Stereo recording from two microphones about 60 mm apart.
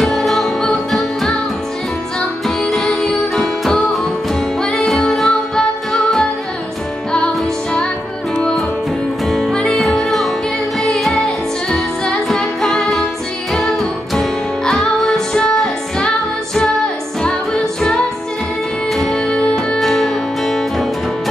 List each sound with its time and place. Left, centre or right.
0.0 s music: centre
2.4 s music: centre
8.4 s music: centre
9.5 s music: centre
18.9 s music: centre